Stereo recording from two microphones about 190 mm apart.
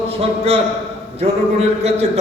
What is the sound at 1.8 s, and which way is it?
Speech, 35° right (ahead or behind).